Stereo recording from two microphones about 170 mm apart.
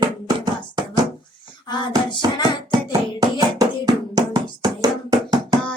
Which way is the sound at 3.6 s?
20° right (ahead or behind).